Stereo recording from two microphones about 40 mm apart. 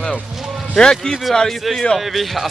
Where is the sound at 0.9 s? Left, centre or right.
Centre.